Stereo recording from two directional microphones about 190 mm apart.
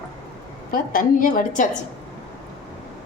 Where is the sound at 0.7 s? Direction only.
45° left (ahead or behind).